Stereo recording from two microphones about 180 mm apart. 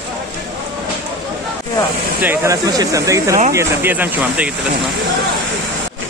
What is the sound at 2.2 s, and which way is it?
Speech, 15° right (ahead or behind).